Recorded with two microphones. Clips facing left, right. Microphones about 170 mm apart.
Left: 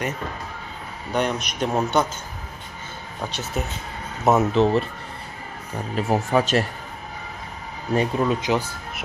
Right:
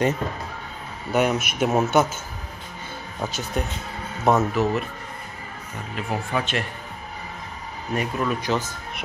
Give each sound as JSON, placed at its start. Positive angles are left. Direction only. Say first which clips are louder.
{"t": 1.1, "sound": "speech", "louder": "right 3 dB", "side_deg": -5}
{"t": 3.3, "sound": "speech", "louder": "even", "side_deg": 0}
{"t": 4.6, "sound": "speech", "louder": "left 4 dB", "side_deg": 30}
{"t": 5.9, "sound": "speech", "louder": "left 6 dB", "side_deg": 40}
{"t": 7.9, "sound": "speech", "louder": "left 4 dB", "side_deg": 30}